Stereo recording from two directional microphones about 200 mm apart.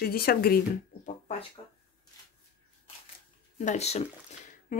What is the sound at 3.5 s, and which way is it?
Speech, 35° left (ahead or behind).